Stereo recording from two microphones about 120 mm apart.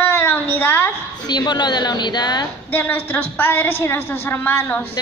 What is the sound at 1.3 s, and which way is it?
Speech, 35° left (ahead or behind).